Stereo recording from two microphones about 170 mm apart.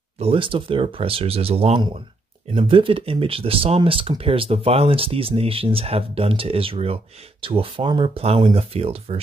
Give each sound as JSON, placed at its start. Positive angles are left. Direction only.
{"t": 0.2, "sound": "speech", "side_deg": -30}